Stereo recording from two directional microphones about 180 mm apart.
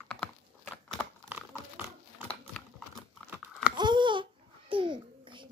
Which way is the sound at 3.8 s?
25° right (ahead or behind).